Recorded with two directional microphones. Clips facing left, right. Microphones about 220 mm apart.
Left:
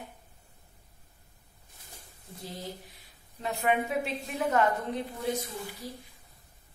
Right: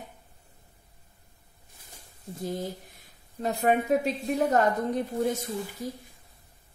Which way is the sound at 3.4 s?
40° right (ahead or behind).